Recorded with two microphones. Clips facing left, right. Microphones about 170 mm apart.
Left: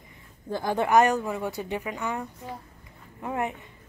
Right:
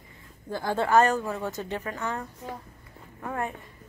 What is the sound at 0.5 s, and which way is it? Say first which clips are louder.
A woman's voice: left 1 dB; 20° left (ahead or behind).